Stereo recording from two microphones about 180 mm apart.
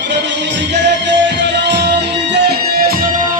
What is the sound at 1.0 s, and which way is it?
Music, 85° right.